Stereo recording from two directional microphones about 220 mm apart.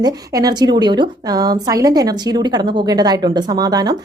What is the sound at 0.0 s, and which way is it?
A woman's voice, 15° right (ahead or behind).